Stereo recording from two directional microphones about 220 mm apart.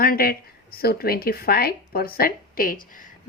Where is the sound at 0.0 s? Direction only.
40° left (ahead or behind).